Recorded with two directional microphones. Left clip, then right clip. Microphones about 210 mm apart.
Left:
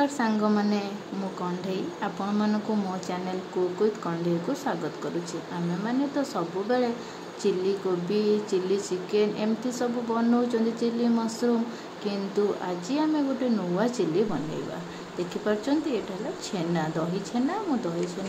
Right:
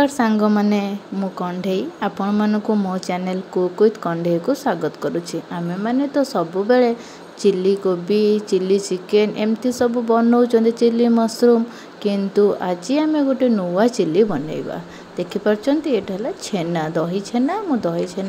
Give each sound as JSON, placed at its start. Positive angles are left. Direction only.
{"t": 0.0, "sound": "speech", "side_deg": -40}
{"t": 3.8, "sound": "speech", "side_deg": -35}
{"t": 15.4, "sound": "speech", "side_deg": -35}